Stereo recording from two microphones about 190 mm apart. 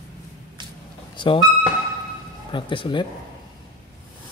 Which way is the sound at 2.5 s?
25° left (ahead or behind).